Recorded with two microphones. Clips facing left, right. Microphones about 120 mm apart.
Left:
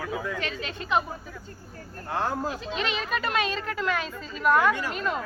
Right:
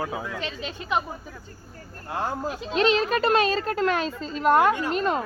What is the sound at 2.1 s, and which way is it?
Speech, 15° right (ahead or behind).